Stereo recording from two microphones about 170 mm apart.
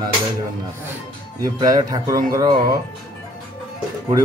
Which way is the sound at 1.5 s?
20° right (ahead or behind).